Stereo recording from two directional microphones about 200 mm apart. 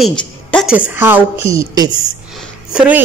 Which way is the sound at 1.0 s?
10° right (ahead or behind).